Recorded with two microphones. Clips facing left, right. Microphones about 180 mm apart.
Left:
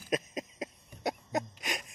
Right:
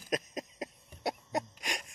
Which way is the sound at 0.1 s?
Centre (ahead or behind).